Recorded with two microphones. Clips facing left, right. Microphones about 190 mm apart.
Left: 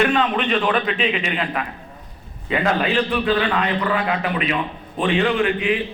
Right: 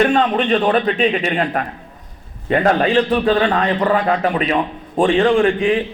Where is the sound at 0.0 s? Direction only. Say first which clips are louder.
Right 4 dB; 40° right (ahead or behind).